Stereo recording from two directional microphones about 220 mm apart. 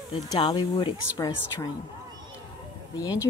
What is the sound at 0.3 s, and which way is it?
Speech, 20° left (ahead or behind).